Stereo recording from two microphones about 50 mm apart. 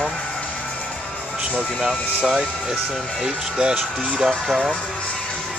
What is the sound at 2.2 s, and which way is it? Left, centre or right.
Speech, centre.